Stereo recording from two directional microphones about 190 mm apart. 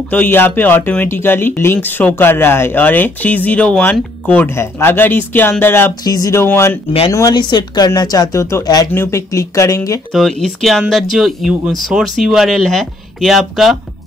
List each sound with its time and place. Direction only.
0.1 s speech: 10° left (ahead or behind)
10.4 s speech: centre (ahead or behind)